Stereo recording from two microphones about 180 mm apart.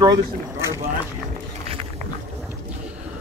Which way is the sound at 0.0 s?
20° right (ahead or behind).